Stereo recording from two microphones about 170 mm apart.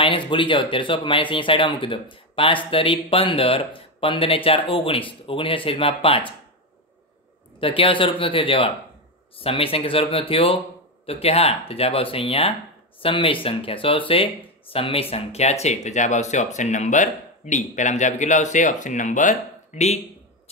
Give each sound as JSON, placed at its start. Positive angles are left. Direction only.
{"t": 0.0, "sound": "speech", "side_deg": 30}
{"t": 7.6, "sound": "speech", "side_deg": 30}